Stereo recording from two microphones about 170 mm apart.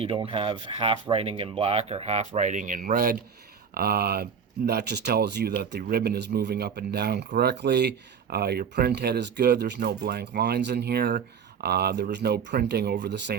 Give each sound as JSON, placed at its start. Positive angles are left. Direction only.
{"t": 0.0, "sound": "speech", "side_deg": -30}